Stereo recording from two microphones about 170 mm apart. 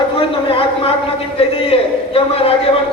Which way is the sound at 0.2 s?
30° left (ahead or behind).